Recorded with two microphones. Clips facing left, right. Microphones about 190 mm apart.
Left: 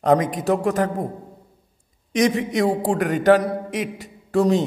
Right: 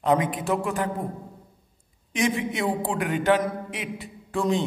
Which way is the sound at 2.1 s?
40° left (ahead or behind).